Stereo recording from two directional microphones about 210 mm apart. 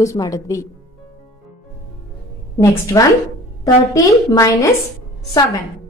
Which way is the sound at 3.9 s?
15° left (ahead or behind).